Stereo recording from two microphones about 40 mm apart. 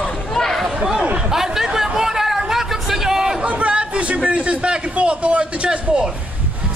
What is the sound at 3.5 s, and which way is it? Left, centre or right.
A man's voice, right.